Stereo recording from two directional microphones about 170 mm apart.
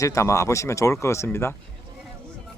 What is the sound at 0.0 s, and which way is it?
Speech, 20° left (ahead or behind).